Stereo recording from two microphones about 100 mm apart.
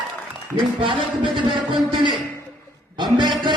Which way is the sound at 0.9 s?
55° right (ahead or behind).